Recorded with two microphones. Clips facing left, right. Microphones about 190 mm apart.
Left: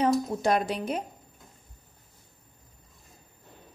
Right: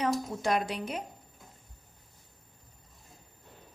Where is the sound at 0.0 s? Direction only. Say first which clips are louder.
Left 5 dB; 35° left (ahead or behind).